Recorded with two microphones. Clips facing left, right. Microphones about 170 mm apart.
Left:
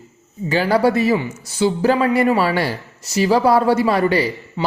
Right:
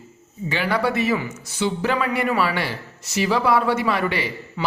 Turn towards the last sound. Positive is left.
turn(degrees=40)  # may be behind; listen again after turning